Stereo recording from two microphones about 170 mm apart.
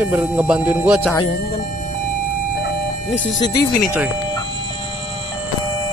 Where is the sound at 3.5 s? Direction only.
60° left (ahead or behind).